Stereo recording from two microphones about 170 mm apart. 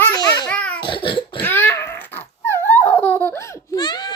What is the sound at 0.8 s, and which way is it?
Cough, 30° left (ahead or behind).